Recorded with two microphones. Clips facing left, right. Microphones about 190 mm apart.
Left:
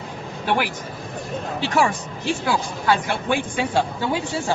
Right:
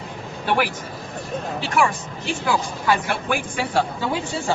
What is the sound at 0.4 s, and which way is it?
Speech, 15° left (ahead or behind).